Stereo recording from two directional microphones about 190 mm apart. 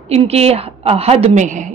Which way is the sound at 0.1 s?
35° right (ahead or behind).